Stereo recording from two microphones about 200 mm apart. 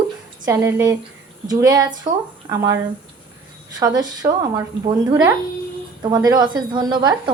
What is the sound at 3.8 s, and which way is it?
Speech, 20° right (ahead or behind).